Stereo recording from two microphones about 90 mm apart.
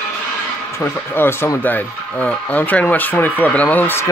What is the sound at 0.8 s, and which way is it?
Speech, 25° left (ahead or behind).